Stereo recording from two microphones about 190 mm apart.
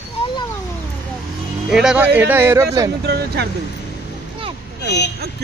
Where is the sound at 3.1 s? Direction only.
60° right (ahead or behind).